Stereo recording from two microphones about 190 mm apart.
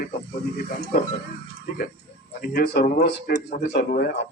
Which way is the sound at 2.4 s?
50° left (ahead or behind).